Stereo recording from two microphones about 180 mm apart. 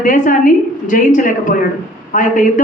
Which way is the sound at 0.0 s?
45° left (ahead or behind).